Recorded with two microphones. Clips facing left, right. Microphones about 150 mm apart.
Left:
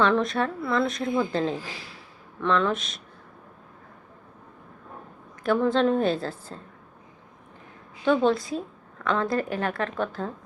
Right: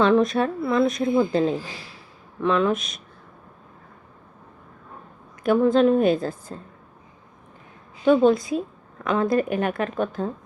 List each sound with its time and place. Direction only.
0.0 s a woman's voice: 20° right (ahead or behind)
5.4 s a woman's voice: 15° right (ahead or behind)
8.0 s a woman's voice: 15° right (ahead or behind)